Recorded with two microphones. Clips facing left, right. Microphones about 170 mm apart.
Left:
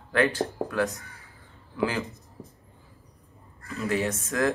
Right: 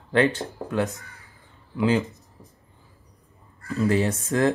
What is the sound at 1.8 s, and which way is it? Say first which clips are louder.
Speech: right 6 dB; 20° right (ahead or behind).